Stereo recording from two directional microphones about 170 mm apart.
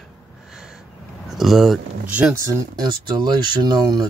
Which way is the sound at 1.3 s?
Centre (ahead or behind).